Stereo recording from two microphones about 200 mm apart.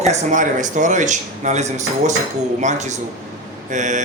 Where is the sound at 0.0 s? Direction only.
35° right (ahead or behind).